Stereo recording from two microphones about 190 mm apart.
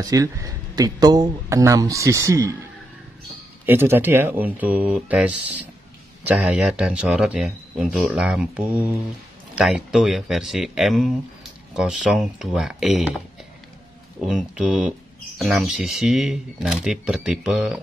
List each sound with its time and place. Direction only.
0.0 s speech: 15° right (ahead or behind)
3.6 s speech: 10° right (ahead or behind)
14.2 s speech: 5° right (ahead or behind)